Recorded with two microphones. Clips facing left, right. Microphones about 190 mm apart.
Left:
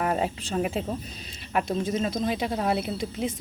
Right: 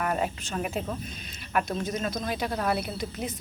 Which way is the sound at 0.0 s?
25° left (ahead or behind).